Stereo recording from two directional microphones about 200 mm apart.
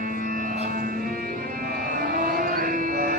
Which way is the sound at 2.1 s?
45° right (ahead or behind).